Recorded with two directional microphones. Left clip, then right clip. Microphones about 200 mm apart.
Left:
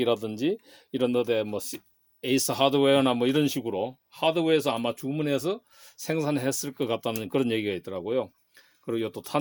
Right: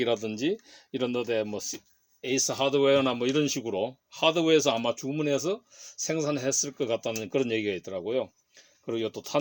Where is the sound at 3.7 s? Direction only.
5° left (ahead or behind).